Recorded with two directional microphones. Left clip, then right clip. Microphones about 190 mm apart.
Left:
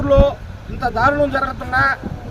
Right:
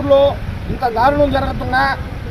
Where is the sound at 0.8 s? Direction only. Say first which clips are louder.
Right 2 dB; 5° left (ahead or behind).